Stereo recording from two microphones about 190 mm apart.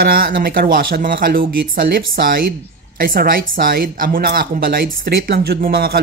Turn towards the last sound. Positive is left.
turn(degrees=-55)  # may be behind; listen again after turning